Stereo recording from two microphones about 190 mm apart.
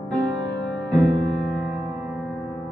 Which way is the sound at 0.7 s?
Centre (ahead or behind).